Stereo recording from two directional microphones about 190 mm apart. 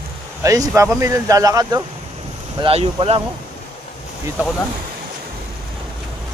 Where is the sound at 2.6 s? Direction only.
25° right (ahead or behind).